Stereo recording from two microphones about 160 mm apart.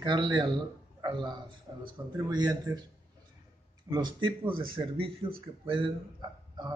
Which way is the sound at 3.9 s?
25° right (ahead or behind).